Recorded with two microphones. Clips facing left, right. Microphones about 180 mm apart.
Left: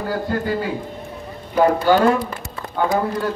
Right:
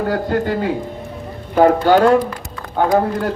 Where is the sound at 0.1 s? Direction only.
65° right (ahead or behind).